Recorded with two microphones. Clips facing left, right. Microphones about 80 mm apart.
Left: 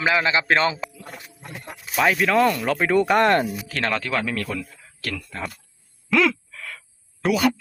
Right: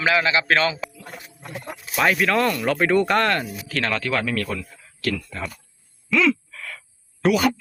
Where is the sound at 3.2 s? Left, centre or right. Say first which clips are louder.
Left 4 dB; left.